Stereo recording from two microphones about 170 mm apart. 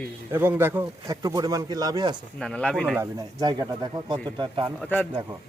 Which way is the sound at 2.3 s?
5° left (ahead or behind).